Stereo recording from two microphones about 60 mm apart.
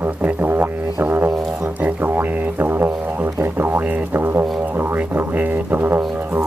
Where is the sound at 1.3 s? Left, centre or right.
Centre.